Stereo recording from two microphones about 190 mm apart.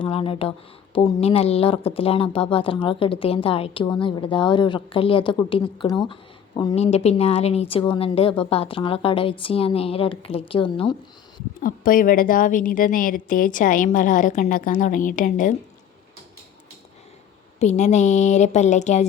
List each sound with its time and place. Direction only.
0.0 s a woman's voice: 30° left (ahead or behind)
11.6 s a woman's voice: 45° left (ahead or behind)
17.6 s a woman's voice: 35° left (ahead or behind)